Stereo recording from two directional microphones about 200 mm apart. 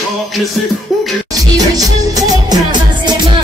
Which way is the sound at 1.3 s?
20° right (ahead or behind).